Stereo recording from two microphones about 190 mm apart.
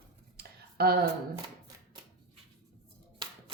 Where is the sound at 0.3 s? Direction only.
55° right (ahead or behind).